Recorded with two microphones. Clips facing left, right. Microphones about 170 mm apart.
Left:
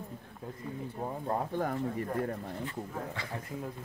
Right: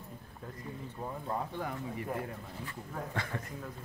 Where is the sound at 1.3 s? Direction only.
45° left (ahead or behind).